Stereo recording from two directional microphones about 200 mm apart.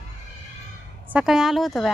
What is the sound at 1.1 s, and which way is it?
Speech, centre (ahead or behind).